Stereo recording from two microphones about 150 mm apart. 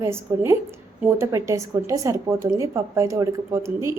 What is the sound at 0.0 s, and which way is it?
A woman's voice, 20° right (ahead or behind).